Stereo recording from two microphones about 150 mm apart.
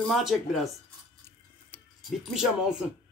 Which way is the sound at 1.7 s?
10° left (ahead or behind).